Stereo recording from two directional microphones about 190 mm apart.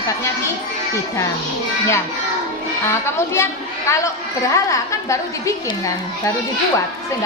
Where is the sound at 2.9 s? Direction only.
15° left (ahead or behind).